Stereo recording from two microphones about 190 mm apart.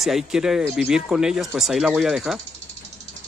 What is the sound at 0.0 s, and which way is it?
Speech, centre (ahead or behind).